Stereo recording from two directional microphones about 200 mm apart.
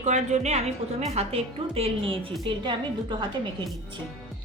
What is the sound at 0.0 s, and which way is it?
A woman's voice, 35° right (ahead or behind).